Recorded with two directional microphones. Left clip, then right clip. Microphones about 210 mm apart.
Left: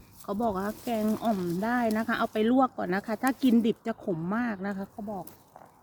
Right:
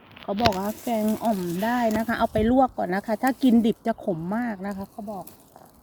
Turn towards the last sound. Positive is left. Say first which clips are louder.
# right 2 dB
turn(degrees=-5)  # may be behind; listen again after turning